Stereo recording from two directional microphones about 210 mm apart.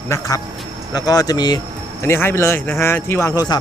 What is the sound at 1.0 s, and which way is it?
Speech, 15° left (ahead or behind).